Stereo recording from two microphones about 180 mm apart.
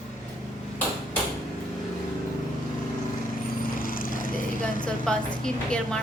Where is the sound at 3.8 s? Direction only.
50° left (ahead or behind).